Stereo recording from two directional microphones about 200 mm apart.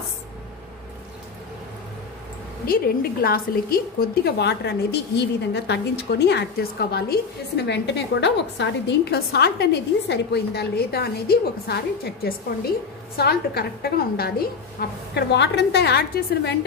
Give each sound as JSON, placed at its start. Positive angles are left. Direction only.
{"t": 2.6, "sound": "a woman's voice", "side_deg": 50}